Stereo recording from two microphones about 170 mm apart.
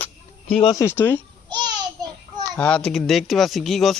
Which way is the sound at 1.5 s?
25° right (ahead or behind).